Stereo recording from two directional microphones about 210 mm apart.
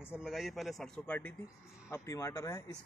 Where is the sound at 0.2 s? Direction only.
Centre (ahead or behind).